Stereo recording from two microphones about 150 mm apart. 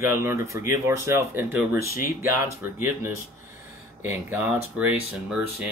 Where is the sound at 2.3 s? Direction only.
15° right (ahead or behind).